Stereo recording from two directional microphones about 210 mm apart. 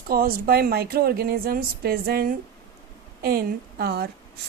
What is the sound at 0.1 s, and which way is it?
A woman's voice, 45° right (ahead or behind).